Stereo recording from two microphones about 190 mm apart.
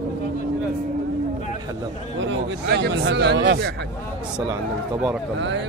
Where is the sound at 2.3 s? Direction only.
60° right (ahead or behind).